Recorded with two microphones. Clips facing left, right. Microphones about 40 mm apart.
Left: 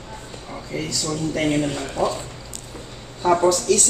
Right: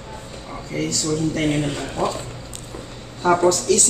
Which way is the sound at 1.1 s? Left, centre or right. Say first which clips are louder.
Even; centre.